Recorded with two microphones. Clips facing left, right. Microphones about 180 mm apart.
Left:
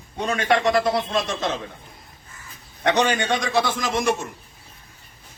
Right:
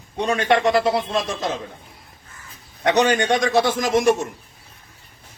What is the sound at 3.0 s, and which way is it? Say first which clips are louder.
A man's voice: right 4 dB; 45° right (ahead or behind).